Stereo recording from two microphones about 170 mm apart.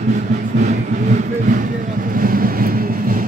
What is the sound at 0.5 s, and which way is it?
Vehicle, 45° right (ahead or behind).